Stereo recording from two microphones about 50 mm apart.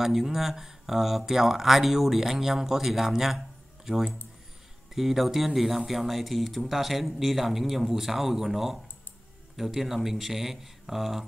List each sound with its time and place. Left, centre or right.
0.0 s speech: centre